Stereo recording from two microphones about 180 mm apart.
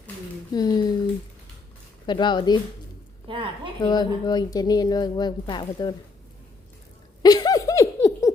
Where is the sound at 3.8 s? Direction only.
25° left (ahead or behind).